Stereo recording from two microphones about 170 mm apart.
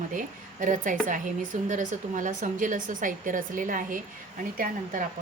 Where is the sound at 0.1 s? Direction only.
50° right (ahead or behind).